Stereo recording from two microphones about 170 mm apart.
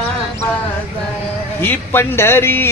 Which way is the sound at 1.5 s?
15° left (ahead or behind).